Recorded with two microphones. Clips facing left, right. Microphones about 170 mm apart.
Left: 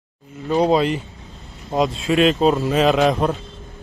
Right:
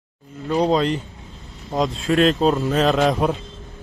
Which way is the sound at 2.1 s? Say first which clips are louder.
Left 1 dB; 5° left (ahead or behind).